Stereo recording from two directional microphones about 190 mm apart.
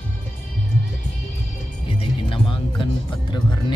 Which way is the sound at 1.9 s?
25° left (ahead or behind).